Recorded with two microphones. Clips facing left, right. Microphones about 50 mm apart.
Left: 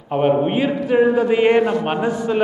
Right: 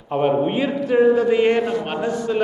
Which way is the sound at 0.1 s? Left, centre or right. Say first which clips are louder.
Left 2 dB; centre.